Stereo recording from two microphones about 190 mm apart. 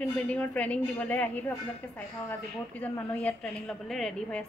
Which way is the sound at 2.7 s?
10° left (ahead or behind).